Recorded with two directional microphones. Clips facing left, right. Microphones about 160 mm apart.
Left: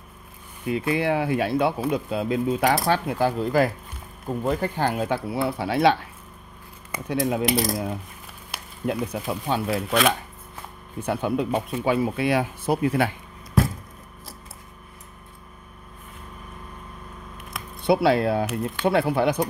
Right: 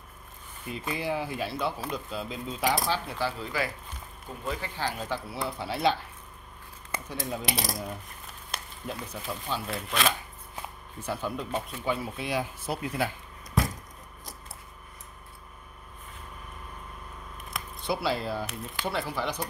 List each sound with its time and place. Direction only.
0.7 s speech: 70° left (ahead or behind)
7.1 s speech: 75° left (ahead or behind)
8.8 s speech: 70° left (ahead or behind)
11.0 s speech: 65° left (ahead or behind)
17.8 s speech: 65° left (ahead or behind)